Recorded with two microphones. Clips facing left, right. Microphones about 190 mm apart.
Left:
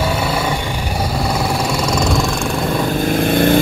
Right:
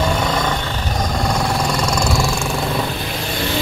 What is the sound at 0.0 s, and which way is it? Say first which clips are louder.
Vehicle: left 1 dB; 10° left (ahead or behind).